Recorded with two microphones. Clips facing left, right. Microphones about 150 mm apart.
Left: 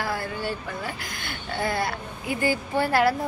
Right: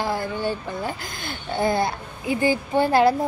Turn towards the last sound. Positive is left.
turn(degrees=-20)  # may be behind; listen again after turning